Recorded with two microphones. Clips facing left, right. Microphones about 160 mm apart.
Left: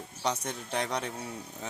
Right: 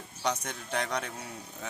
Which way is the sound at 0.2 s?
30° left (ahead or behind).